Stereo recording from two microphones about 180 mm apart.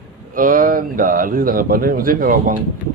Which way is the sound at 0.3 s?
50° right (ahead or behind).